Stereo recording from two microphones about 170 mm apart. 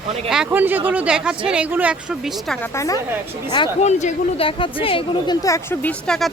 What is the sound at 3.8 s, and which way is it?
Speech, 40° left (ahead or behind).